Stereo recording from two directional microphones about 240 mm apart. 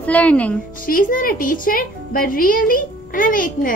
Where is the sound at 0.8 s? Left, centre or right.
Left.